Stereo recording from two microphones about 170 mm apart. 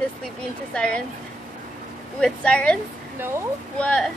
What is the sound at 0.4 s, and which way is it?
Speech, 5° left (ahead or behind).